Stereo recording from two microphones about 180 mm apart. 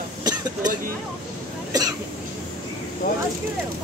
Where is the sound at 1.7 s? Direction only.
20° right (ahead or behind).